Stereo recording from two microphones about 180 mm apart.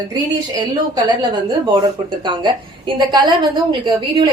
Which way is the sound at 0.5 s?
20° right (ahead or behind).